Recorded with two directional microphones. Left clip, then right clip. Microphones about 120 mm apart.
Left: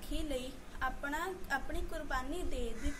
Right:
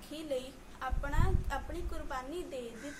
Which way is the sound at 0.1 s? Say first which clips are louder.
Right 2 dB; 20° right (ahead or behind).